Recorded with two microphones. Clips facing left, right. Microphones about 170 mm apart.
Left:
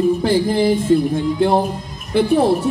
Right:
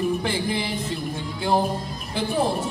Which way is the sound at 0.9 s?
50° left (ahead or behind).